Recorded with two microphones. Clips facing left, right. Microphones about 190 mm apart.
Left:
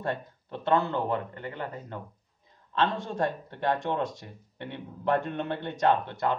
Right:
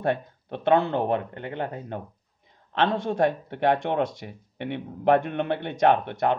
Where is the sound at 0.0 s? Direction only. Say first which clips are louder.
Right 6 dB; 65° right (ahead or behind).